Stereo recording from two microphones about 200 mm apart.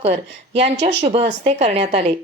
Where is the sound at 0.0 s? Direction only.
30° right (ahead or behind).